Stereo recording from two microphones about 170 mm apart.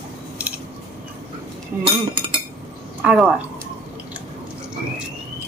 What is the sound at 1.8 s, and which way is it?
Cutlery, 30° right (ahead or behind).